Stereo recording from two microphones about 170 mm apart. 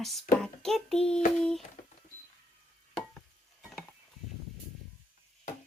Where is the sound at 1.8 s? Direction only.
50° left (ahead or behind).